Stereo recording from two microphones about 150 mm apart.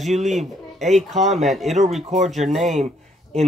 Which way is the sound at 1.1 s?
50° right (ahead or behind).